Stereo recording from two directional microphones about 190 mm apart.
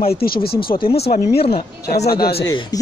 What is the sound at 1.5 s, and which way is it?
Speech, 55° left (ahead or behind).